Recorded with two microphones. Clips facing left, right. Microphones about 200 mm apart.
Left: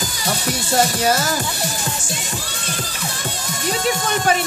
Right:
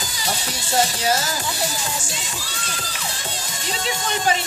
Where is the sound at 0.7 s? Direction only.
55° left (ahead or behind).